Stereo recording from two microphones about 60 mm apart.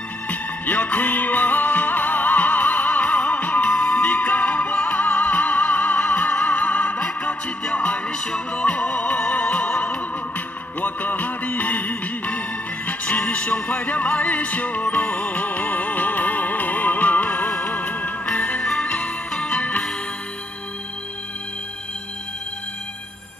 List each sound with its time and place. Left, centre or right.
0.3 s music: left